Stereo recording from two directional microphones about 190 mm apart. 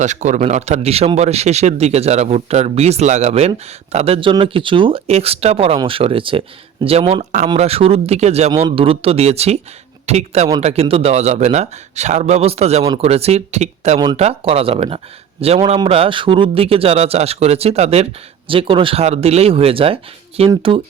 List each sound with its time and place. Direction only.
0.0 s speech: 40° right (ahead or behind)